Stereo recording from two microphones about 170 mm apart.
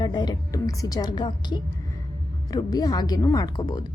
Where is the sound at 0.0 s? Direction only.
25° left (ahead or behind).